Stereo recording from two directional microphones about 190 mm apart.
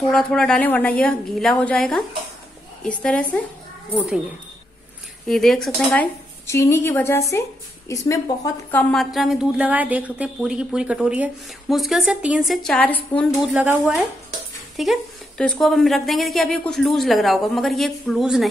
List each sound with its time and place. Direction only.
0.1 s speech: 5° left (ahead or behind)
5.3 s speech: centre (ahead or behind)
6.4 s a woman's voice: 15° left (ahead or behind)
8.7 s speech: centre (ahead or behind)